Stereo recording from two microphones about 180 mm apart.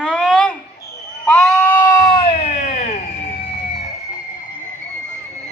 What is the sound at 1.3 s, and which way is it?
Sheep, 5° left (ahead or behind).